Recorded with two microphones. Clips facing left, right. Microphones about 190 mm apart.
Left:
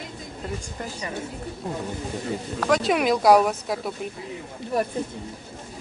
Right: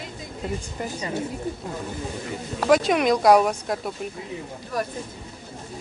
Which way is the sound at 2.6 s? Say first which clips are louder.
Right 3 dB; 5° right (ahead or behind).